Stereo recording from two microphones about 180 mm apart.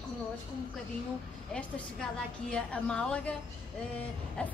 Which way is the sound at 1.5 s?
5° left (ahead or behind).